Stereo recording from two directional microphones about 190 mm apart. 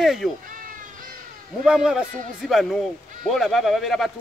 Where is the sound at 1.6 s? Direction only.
5° right (ahead or behind).